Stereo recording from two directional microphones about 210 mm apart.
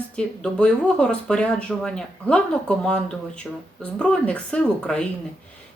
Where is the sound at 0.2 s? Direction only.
5° left (ahead or behind).